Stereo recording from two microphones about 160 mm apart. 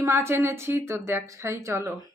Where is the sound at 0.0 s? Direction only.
15° right (ahead or behind).